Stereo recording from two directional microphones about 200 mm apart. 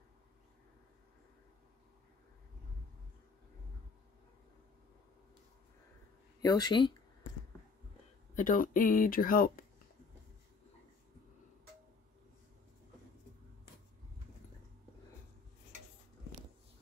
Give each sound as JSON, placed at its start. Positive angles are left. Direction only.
{"t": 6.4, "sound": "speech", "side_deg": 20}
{"t": 8.4, "sound": "speech", "side_deg": 45}